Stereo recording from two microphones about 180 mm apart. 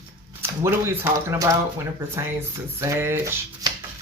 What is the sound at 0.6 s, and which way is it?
Speech, 15° right (ahead or behind).